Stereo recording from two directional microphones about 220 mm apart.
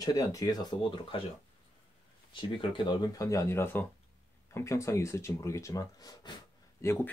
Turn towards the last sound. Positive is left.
turn(degrees=10)  # may be behind; listen again after turning